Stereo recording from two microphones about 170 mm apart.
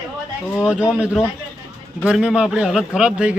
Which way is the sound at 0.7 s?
5° right (ahead or behind).